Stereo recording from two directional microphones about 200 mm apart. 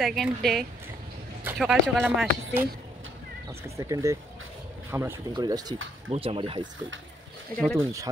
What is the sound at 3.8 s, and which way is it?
Speech, 15° right (ahead or behind).